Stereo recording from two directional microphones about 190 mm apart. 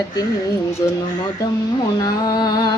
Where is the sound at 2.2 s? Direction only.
20° left (ahead or behind).